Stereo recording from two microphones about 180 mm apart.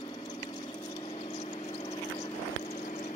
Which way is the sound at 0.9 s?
30° left (ahead or behind).